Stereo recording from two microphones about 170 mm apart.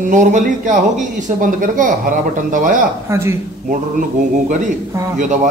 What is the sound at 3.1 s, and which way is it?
Speech, 15° right (ahead or behind).